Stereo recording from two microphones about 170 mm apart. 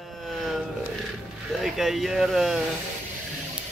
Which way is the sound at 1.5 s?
Centre (ahead or behind).